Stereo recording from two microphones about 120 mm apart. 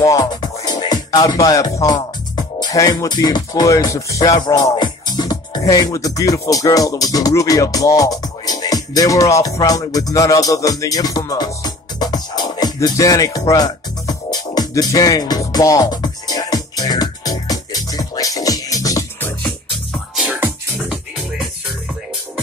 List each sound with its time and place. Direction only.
0.0 s music: 30° left (ahead or behind)